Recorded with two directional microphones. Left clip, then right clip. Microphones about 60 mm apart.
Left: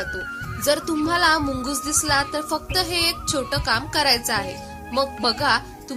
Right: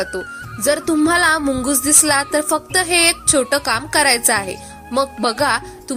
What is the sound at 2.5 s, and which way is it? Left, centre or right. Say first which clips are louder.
Speech: right 6 dB; right.